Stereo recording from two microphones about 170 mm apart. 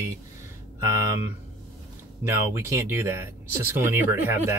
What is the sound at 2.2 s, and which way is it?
Speech, 15° right (ahead or behind).